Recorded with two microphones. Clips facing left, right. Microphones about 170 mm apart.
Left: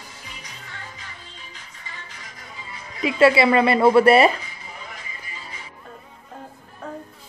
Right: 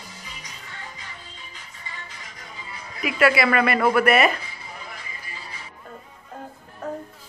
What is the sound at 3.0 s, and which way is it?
A woman's voice, 25° left (ahead or behind).